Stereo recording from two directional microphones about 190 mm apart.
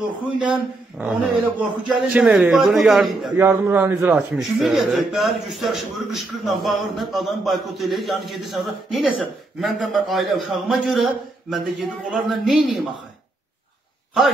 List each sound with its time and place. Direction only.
0.4 s a man's voice: 5° right (ahead or behind)
3.3 s a man's voice: 10° right (ahead or behind)